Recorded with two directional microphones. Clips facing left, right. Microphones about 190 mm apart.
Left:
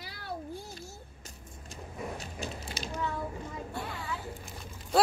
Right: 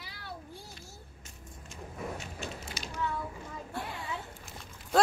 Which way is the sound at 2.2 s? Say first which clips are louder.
Left 1 dB; 35° left (ahead or behind).